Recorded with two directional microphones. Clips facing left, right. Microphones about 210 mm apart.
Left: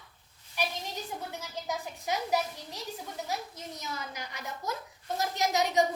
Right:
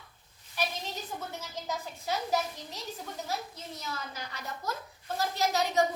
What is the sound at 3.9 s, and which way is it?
A woman's voice, 15° left (ahead or behind).